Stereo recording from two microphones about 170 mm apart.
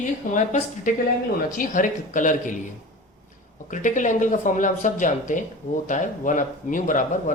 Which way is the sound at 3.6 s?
50° left (ahead or behind).